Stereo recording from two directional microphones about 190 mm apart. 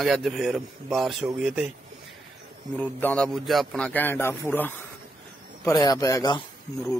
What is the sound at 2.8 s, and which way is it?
A man's voice, 10° left (ahead or behind).